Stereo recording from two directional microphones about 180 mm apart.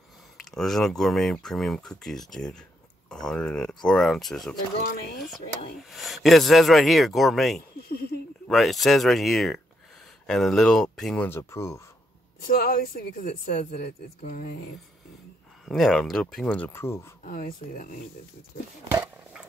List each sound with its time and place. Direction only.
0.4 s speech: centre (ahead or behind)
4.8 s speech: 65° left (ahead or behind)
5.8 s speech: centre (ahead or behind)
7.9 s a sound: 60° left (ahead or behind)
8.5 s speech: centre (ahead or behind)
11.2 s speech: 15° left (ahead or behind)
12.4 s speech: 55° left (ahead or behind)
15.6 s speech: centre (ahead or behind)
17.2 s speech: 55° left (ahead or behind)